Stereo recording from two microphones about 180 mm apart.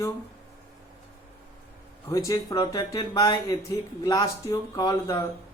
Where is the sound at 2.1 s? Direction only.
20° left (ahead or behind).